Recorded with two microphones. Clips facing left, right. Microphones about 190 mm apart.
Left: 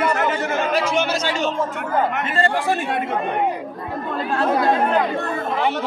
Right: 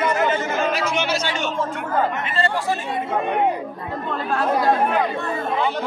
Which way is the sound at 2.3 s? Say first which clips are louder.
Left 4 dB; 50° left (ahead or behind).